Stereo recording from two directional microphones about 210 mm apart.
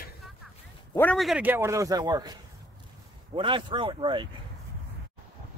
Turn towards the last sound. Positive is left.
turn(degrees=-25)  # may be behind; listen again after turning